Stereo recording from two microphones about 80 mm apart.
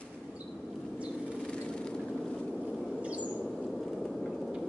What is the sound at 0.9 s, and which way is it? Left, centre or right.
Bird flight, centre.